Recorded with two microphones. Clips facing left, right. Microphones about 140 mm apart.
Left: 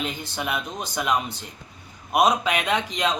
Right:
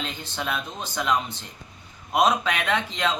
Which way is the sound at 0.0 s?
10° left (ahead or behind).